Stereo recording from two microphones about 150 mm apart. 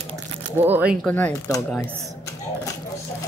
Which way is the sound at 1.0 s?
10° left (ahead or behind).